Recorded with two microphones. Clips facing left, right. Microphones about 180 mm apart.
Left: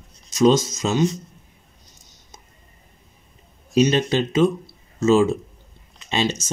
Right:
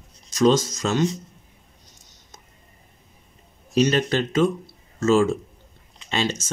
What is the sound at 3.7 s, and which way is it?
Speech, 15° left (ahead or behind).